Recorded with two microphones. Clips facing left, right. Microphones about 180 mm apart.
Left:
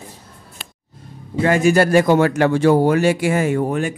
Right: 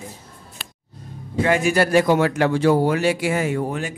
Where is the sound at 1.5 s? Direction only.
45° left (ahead or behind).